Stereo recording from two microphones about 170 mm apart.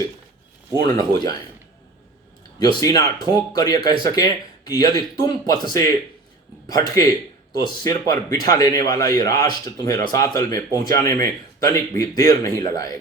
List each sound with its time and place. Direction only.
0.9 s a man's voice: 25° left (ahead or behind)
2.6 s a man's voice: 25° left (ahead or behind)